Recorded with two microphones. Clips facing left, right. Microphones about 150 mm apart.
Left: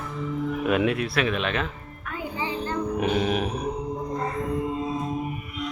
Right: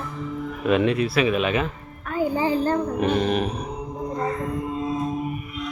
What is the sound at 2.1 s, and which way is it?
Music, 40° right (ahead or behind).